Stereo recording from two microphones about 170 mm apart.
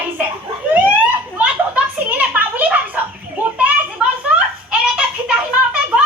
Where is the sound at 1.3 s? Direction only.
10° right (ahead or behind).